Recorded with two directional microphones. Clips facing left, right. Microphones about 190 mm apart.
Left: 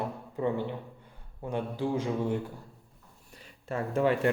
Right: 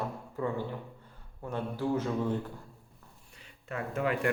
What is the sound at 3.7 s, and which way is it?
Speech, 30° left (ahead or behind).